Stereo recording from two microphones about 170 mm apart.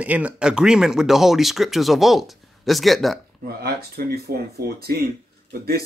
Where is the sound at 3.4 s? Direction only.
65° right (ahead or behind).